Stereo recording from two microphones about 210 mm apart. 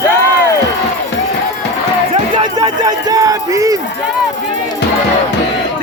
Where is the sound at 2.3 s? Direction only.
20° right (ahead or behind).